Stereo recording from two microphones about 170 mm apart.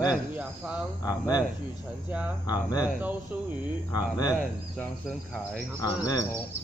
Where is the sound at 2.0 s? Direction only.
10° right (ahead or behind).